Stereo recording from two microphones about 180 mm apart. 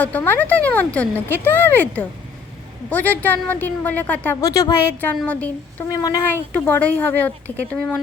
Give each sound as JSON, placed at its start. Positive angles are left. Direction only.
{"t": 0.0, "sound": "a woman's voice", "side_deg": 10}
{"t": 5.9, "sound": "speech", "side_deg": 20}
{"t": 6.7, "sound": "a woman's voice", "side_deg": 10}